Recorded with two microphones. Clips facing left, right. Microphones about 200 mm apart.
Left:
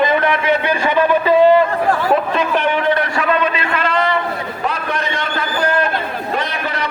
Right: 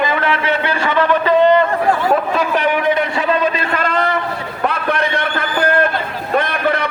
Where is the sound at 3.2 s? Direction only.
30° right (ahead or behind).